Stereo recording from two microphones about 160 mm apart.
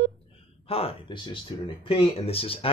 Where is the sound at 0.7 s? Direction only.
35° left (ahead or behind).